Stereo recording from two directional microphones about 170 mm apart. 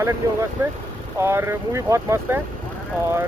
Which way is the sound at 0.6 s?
15° right (ahead or behind).